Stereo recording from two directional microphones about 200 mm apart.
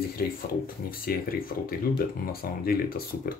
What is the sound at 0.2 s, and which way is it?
Speech, 50° left (ahead or behind).